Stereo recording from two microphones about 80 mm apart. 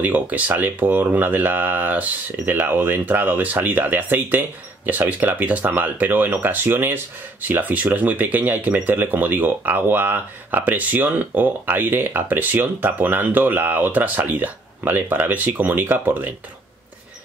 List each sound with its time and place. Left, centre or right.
0.0 s speech: right